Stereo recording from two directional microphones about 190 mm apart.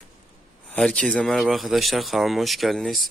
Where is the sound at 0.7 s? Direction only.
5° left (ahead or behind).